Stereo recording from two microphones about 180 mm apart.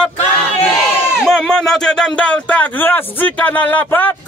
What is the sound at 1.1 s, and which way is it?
Speech, centre (ahead or behind).